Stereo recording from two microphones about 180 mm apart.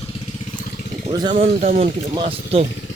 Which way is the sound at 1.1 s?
25° right (ahead or behind).